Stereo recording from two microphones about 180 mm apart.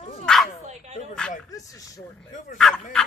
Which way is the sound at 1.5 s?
20° left (ahead or behind).